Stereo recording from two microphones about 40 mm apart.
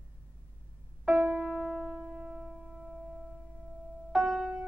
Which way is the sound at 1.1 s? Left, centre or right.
Centre.